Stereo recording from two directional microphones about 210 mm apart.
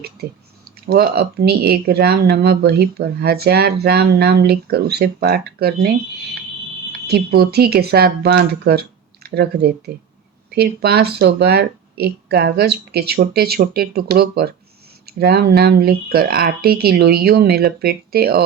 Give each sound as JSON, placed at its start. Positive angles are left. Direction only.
{"t": 0.0, "sound": "speech", "side_deg": -45}